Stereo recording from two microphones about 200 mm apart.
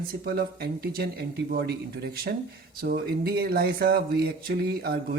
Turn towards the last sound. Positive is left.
turn(degrees=-50)  # may be behind; listen again after turning